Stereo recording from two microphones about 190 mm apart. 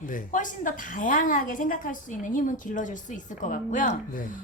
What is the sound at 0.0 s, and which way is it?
A woman's voice, 45° left (ahead or behind).